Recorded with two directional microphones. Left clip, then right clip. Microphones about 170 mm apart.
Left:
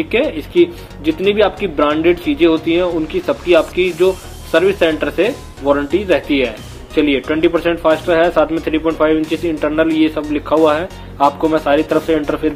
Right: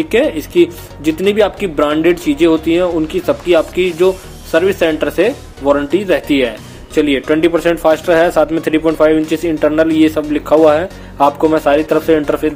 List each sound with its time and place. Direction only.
0.1 s speech: 30° right (ahead or behind)
11.1 s speech: 40° right (ahead or behind)